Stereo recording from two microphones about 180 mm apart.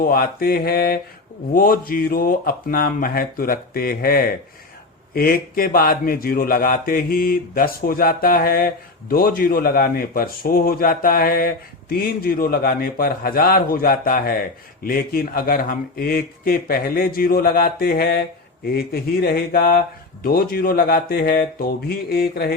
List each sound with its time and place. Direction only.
0.0 s a man's voice: 55° left (ahead or behind)